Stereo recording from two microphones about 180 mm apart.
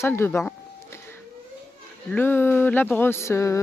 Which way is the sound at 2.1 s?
10° left (ahead or behind).